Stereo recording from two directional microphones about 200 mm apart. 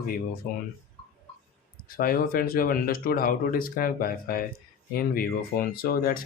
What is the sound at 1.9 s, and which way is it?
Speech, 45° left (ahead or behind).